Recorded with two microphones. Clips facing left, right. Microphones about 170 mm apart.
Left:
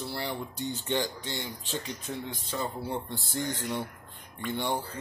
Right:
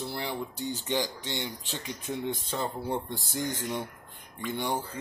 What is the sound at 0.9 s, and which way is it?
Speech, 15° right (ahead or behind).